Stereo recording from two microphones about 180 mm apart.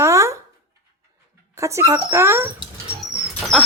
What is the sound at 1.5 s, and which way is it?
Speech, 15° right (ahead or behind).